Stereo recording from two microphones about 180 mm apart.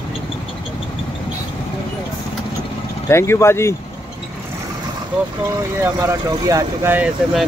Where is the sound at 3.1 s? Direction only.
15° left (ahead or behind).